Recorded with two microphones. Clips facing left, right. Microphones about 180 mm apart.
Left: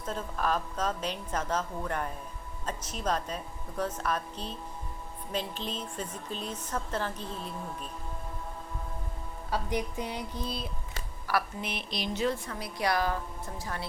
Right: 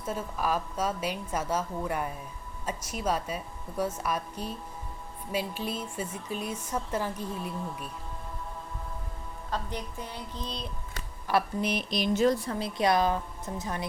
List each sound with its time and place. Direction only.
0.0 s speech: 10° right (ahead or behind)
9.5 s speech: 15° left (ahead or behind)
11.3 s speech: 20° right (ahead or behind)
11.6 s speech: 40° right (ahead or behind); by 13.8 s 20° right (ahead or behind)